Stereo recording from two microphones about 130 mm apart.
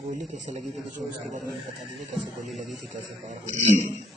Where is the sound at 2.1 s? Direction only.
Centre (ahead or behind).